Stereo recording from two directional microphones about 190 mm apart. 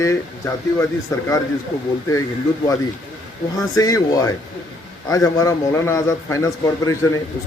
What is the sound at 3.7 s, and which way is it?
A man's voice, 20° left (ahead or behind).